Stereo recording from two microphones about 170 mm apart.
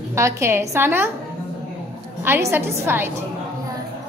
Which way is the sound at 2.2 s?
15° right (ahead or behind).